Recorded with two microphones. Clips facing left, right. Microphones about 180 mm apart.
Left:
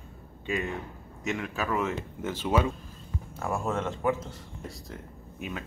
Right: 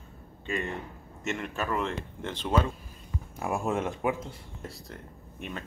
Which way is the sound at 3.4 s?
15° right (ahead or behind).